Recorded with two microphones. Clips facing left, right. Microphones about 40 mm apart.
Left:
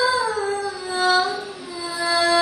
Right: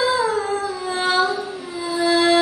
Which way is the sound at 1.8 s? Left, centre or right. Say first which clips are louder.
Right 3 dB; right.